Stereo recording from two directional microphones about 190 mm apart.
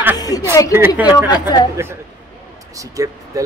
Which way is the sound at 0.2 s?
20° left (ahead or behind).